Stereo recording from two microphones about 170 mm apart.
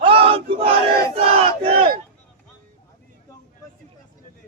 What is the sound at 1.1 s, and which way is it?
Crowd, 35° right (ahead or behind).